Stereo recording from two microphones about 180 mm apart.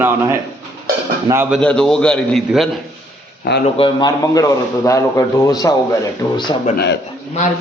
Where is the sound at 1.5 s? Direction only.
5° left (ahead or behind).